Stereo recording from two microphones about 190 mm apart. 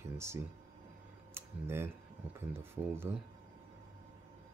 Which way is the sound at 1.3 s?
15° right (ahead or behind).